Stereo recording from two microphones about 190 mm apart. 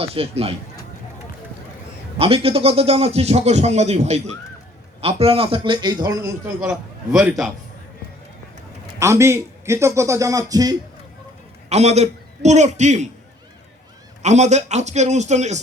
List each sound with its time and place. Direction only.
0.0 s a man's voice: 30° right (ahead or behind)
2.1 s a man's voice: 30° right (ahead or behind); by 7.5 s 5° right (ahead or behind)
9.0 s a man's voice: 15° right (ahead or behind)
11.7 s a man's voice: 35° right (ahead or behind)
14.2 s a man's voice: 35° right (ahead or behind)